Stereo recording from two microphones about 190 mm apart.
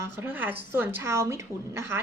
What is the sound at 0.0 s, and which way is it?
A woman's voice, 10° right (ahead or behind).